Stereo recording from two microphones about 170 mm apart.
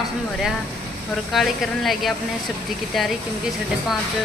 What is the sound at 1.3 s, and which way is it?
A woman's voice, centre (ahead or behind).